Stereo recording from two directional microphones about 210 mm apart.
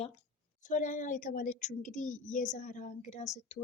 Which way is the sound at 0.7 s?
40° left (ahead or behind).